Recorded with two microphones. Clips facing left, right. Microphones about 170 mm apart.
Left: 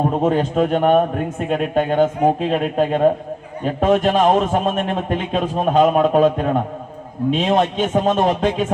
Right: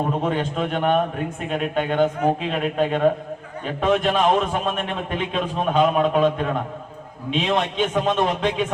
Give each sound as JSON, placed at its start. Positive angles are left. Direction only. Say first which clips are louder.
{"t": 0.2, "sound": "a man's voice", "louder": "left 6 dB", "side_deg": 40}